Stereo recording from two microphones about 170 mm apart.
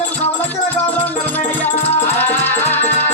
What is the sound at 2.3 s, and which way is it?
Music, 10° left (ahead or behind).